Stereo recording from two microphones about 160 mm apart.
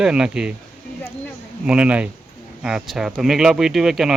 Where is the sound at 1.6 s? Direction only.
10° right (ahead or behind).